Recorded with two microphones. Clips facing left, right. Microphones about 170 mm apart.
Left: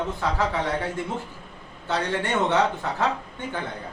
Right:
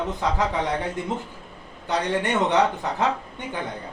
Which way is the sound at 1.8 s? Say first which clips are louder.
Right 2 dB; 15° right (ahead or behind).